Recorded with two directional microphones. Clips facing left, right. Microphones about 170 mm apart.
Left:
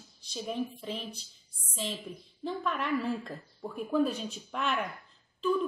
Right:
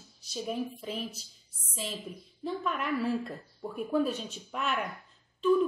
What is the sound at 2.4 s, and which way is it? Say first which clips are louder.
A woman's voice: even; centre (ahead or behind).